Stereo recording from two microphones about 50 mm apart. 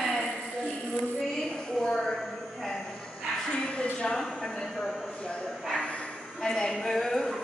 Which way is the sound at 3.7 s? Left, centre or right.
Centre.